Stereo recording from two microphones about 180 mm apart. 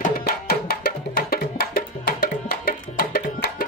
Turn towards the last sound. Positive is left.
turn(degrees=60)  # may be behind; listen again after turning